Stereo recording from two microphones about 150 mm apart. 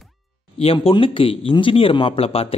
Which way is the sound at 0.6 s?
40° left (ahead or behind).